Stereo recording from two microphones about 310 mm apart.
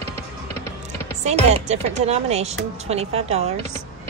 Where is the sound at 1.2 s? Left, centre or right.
Right.